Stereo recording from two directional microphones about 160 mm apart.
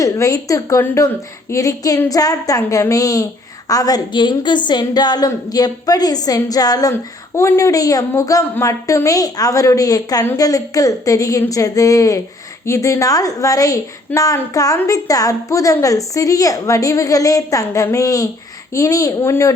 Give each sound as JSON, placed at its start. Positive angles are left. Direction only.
{"t": 0.0, "sound": "a woman's voice", "side_deg": 20}